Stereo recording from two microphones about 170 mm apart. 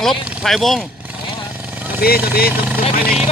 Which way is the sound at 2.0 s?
65° left (ahead or behind).